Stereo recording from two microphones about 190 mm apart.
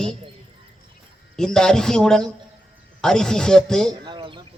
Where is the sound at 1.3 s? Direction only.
5° left (ahead or behind).